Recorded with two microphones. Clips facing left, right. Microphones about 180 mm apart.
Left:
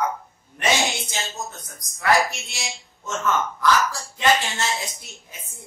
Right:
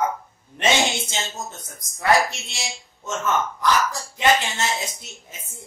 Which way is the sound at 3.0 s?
20° right (ahead or behind).